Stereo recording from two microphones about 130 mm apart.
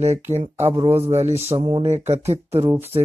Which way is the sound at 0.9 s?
50° right (ahead or behind).